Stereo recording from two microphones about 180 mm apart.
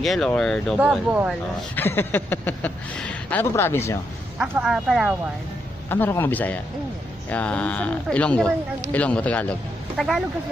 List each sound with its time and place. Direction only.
0.0 s speech: centre (ahead or behind)
1.7 s speech: 10° left (ahead or behind)
4.4 s speech: 5° right (ahead or behind)
5.9 s speech: 10° left (ahead or behind)